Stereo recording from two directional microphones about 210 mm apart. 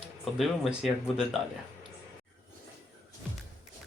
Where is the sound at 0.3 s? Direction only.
Centre (ahead or behind).